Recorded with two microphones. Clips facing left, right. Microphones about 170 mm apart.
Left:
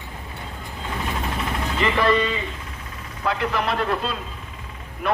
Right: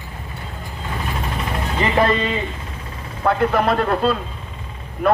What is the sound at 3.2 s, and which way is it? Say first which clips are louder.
Speech: right 6 dB; 50° right (ahead or behind).